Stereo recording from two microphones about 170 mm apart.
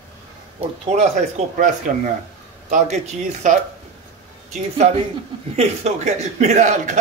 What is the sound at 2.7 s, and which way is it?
Speech, 45° right (ahead or behind).